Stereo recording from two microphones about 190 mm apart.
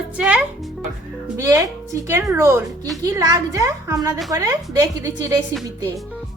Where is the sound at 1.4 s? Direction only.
15° right (ahead or behind).